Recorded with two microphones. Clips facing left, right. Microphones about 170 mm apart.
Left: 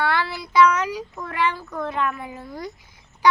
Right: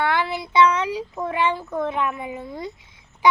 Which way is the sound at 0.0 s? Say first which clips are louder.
Right 1 dB; 20° right (ahead or behind).